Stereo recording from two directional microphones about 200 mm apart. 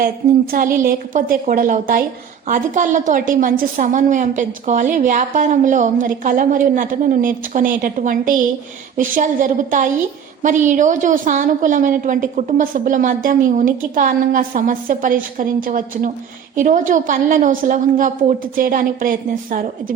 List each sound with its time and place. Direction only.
0.5 s a woman's voice: 45° right (ahead or behind)